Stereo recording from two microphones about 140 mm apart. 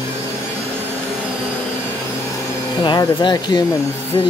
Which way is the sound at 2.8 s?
35° left (ahead or behind).